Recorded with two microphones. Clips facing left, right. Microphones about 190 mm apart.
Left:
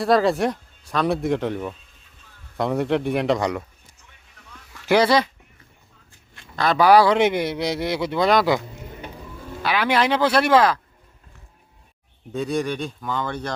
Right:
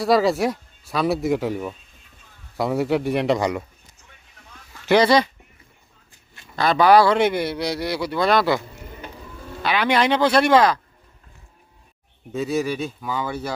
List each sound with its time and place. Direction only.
0.0 s speech: centre (ahead or behind)
4.9 s speech: 5° left (ahead or behind)
6.3 s a sound: 5° right (ahead or behind)
6.7 s speech: 10° left (ahead or behind)
9.6 s speech: 5° left (ahead or behind)
12.3 s speech: 5° right (ahead or behind)